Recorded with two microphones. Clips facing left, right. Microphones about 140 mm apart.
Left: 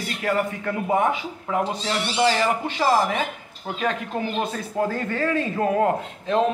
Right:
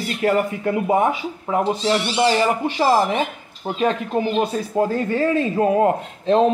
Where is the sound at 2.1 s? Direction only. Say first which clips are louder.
Even; 20° right (ahead or behind).